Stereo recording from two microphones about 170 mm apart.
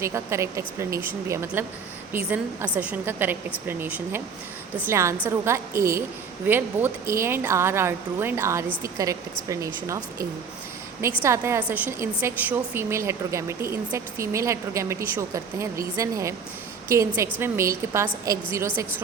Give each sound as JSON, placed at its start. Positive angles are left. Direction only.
{"t": 0.0, "sound": "a woman's voice", "side_deg": -15}
{"t": 17.4, "sound": "a woman's voice", "side_deg": -15}